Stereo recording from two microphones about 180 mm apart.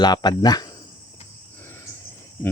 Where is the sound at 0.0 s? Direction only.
25° left (ahead or behind).